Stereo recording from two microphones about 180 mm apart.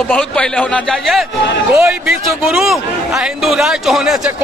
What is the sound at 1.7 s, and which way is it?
Speech, 15° right (ahead or behind).